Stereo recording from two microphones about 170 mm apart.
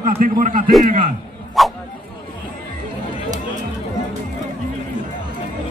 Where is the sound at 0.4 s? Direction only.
50° right (ahead or behind).